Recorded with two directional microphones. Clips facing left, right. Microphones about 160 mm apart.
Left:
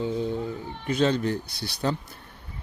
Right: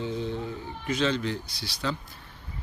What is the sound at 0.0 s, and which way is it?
A man's voice, 45° left (ahead or behind).